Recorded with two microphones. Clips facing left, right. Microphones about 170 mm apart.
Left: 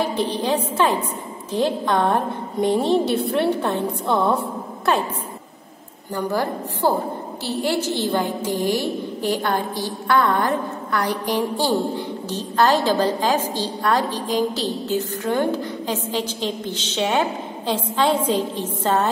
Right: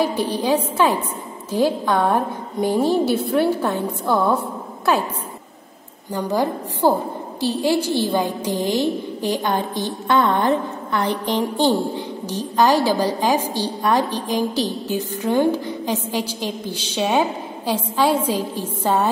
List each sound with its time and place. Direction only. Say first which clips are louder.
0.0 s a woman's voice: right 2 dB; 10° right (ahead or behind)
6.1 s a woman's voice: right 2 dB; 15° right (ahead or behind)
8.5 s music: right 1 dB; 20° right (ahead or behind)
9.3 s a woman's voice: right 1 dB; 20° right (ahead or behind)